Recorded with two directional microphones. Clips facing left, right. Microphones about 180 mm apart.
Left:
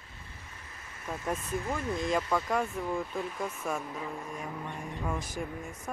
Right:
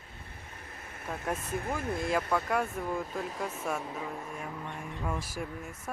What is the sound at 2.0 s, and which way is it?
Speech, 5° right (ahead or behind).